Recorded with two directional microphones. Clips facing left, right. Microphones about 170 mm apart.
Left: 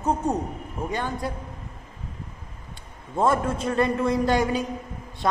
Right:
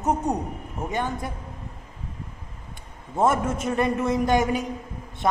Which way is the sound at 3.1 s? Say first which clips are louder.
Even; 20° right (ahead or behind).